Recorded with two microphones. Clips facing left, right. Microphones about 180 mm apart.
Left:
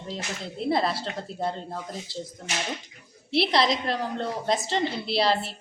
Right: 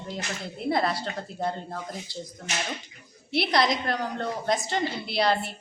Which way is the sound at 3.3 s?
30° left (ahead or behind).